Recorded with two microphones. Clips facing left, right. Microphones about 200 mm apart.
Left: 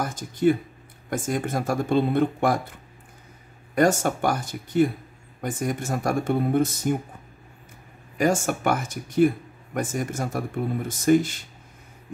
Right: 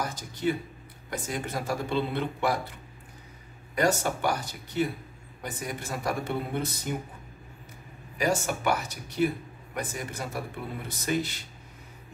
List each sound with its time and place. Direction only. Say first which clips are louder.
0.0 s speech: left 7 dB; 50° left (ahead or behind)
3.7 s speech: left 5 dB; 50° left (ahead or behind)
8.2 s speech: left 5 dB; 50° left (ahead or behind)